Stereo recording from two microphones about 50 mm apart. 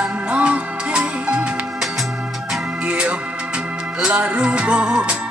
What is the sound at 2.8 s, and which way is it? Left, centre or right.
Music, right.